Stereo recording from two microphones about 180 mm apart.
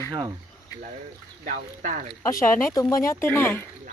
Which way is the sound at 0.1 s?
20° right (ahead or behind).